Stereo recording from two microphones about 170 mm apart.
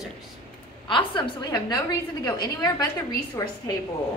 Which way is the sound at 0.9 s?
30° left (ahead or behind).